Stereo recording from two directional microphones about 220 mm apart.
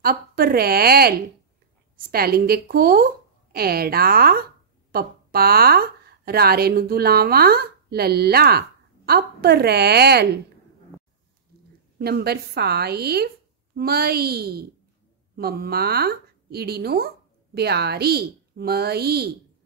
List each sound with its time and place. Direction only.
0.0 s a woman's voice: 45° right (ahead or behind)
12.0 s a woman's voice: 45° right (ahead or behind)